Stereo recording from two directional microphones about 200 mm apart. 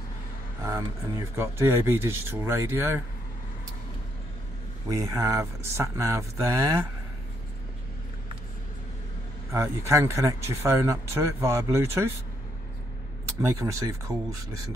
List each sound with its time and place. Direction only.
0.7 s speech: 15° right (ahead or behind)
4.8 s speech: 15° right (ahead or behind)
9.5 s speech: 15° right (ahead or behind)
13.4 s speech: 15° right (ahead or behind)